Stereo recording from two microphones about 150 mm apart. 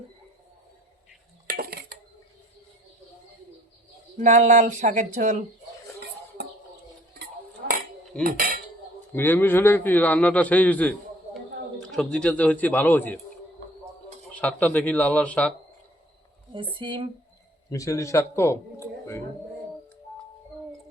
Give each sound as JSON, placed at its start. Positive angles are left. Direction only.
{"t": 1.5, "sound": "a sound", "side_deg": -85}
{"t": 4.2, "sound": "speech", "side_deg": -60}
{"t": 8.2, "sound": "cutlery", "side_deg": -70}
{"t": 9.1, "sound": "a man's voice", "side_deg": 15}
{"t": 14.3, "sound": "a man's voice", "side_deg": 10}
{"t": 16.7, "sound": "speech", "side_deg": -30}
{"t": 17.7, "sound": "a man's voice", "side_deg": 20}